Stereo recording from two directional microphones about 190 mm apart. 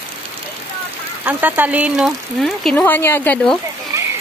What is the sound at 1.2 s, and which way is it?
Speech, 10° right (ahead or behind).